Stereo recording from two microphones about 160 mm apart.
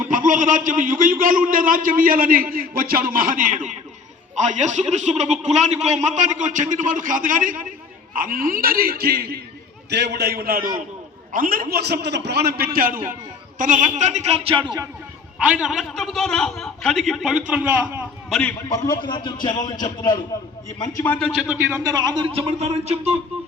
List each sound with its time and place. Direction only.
0.1 s a man's voice: 55° right (ahead or behind); by 9.4 s 80° right
9.9 s a man's voice: 90° right; by 14.6 s 40° right (ahead or behind)
15.4 s a man's voice: 5° right (ahead or behind)
18.9 s a man's voice: 30° left (ahead or behind)
21.2 s a man's voice: centre (ahead or behind)
21.5 s a man's voice: 10° right (ahead or behind)
21.8 s speech: 25° right (ahead or behind); by 23.1 s 40° right (ahead or behind)